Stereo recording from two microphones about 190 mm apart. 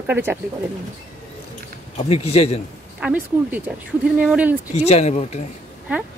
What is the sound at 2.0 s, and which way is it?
Speech, 30° left (ahead or behind).